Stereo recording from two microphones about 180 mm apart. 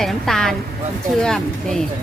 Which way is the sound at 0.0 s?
Centre (ahead or behind).